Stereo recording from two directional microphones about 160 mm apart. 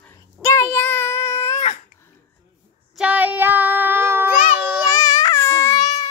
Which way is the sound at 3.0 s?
10° right (ahead or behind).